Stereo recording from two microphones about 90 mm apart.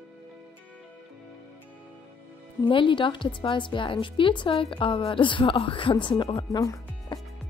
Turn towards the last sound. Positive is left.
turn(degrees=40)  # may be behind; listen again after turning